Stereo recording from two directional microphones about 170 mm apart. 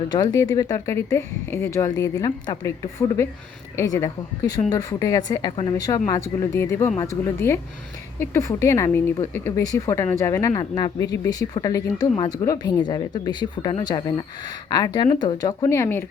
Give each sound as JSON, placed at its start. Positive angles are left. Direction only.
{"t": 0.1, "sound": "a woman's voice", "side_deg": 25}